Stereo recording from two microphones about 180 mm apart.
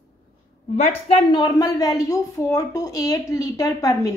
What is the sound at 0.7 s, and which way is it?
Speech, 35° left (ahead or behind).